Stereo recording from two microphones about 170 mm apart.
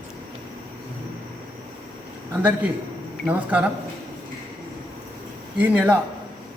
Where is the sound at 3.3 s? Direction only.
10° right (ahead or behind).